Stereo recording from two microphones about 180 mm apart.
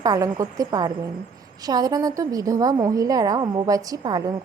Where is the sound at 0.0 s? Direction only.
20° right (ahead or behind).